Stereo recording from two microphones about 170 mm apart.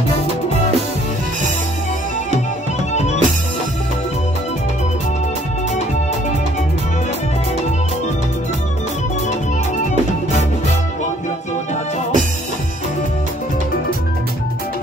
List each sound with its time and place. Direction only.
2.9 s music: 40° left (ahead or behind)